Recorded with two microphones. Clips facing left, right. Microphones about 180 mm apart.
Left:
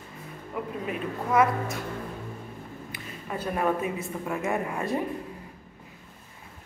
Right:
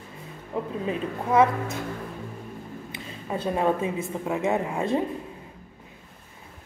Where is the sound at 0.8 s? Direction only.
25° right (ahead or behind).